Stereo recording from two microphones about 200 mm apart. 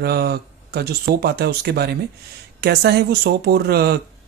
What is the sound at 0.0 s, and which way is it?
Speech, 50° right (ahead or behind).